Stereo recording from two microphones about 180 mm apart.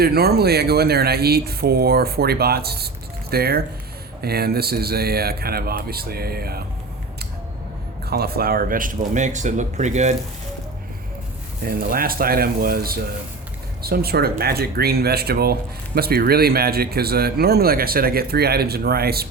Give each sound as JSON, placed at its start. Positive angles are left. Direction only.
{"t": 0.0, "sound": "speech", "side_deg": -60}
{"t": 8.0, "sound": "speech", "side_deg": -60}
{"t": 11.6, "sound": "speech", "side_deg": -55}